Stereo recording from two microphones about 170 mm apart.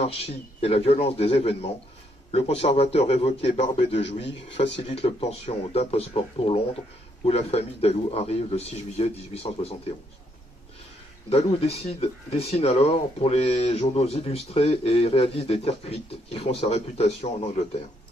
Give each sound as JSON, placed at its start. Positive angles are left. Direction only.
{"t": 0.6, "sound": "speech", "side_deg": 35}
{"t": 11.2, "sound": "speech", "side_deg": 35}